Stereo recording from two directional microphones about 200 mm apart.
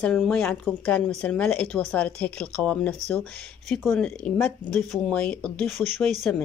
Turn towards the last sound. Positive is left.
turn(degrees=5)  # may be behind; listen again after turning